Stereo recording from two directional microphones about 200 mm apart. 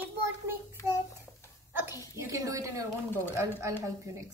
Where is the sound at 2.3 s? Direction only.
15° right (ahead or behind).